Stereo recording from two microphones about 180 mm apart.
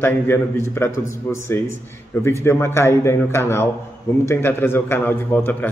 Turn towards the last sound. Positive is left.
turn(degrees=10)  # may be behind; listen again after turning